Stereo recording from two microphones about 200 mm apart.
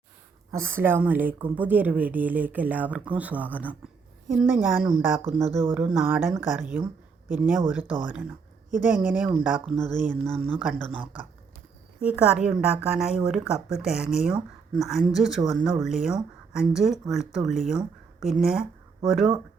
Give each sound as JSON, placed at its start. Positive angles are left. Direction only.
{"t": 0.5, "sound": "a woman's voice", "side_deg": -10}
{"t": 11.9, "sound": "speech", "side_deg": -5}